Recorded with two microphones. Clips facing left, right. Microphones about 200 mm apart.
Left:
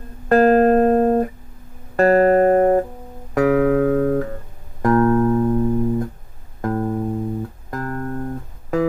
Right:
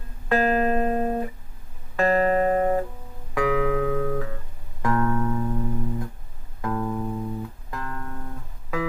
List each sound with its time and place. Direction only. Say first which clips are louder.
0.3 s music: left 9 dB; 45° left (ahead or behind)